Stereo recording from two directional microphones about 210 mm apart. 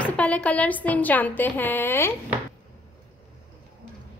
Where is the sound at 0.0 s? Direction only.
5° left (ahead or behind).